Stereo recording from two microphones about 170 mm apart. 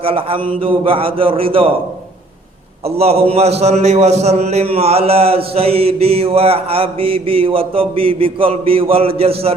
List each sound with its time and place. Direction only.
0.0 s mantra: 35° right (ahead or behind)
2.8 s mantra: 35° right (ahead or behind)